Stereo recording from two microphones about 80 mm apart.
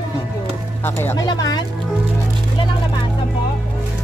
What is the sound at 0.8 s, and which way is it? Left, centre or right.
Speech, left.